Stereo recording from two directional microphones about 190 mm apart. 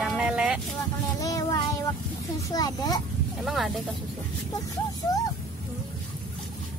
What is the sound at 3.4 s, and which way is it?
Speech, centre (ahead or behind).